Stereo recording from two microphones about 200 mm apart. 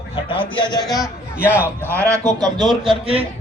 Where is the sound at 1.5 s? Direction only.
10° right (ahead or behind).